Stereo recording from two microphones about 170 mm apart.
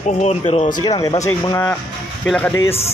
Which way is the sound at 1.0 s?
20° left (ahead or behind).